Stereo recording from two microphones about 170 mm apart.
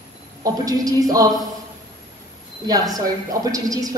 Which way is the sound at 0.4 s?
20° right (ahead or behind).